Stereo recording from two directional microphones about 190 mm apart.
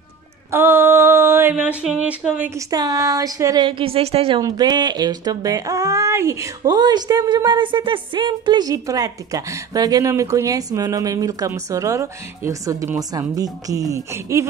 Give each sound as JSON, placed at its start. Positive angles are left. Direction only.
{"t": 0.5, "sound": "speech", "side_deg": -10}
{"t": 2.7, "sound": "speech", "side_deg": -20}
{"t": 4.4, "sound": "speech", "side_deg": -20}